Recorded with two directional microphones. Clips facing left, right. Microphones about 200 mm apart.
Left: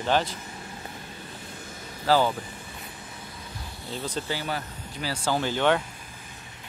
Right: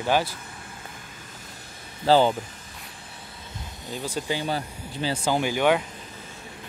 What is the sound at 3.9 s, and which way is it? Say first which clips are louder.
Speech: right 2 dB; 10° right (ahead or behind).